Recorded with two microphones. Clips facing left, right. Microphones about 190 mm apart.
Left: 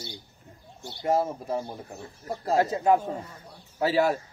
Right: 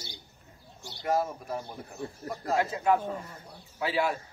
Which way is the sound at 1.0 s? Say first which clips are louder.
Left 3 dB; 30° left (ahead or behind).